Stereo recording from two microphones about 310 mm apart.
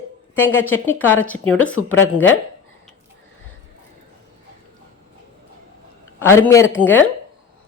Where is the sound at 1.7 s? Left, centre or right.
Left.